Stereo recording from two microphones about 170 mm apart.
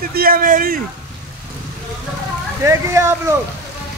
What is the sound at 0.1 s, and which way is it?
Speech, 60° right (ahead or behind).